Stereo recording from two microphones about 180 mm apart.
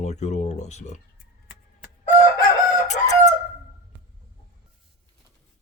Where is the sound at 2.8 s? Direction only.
40° left (ahead or behind).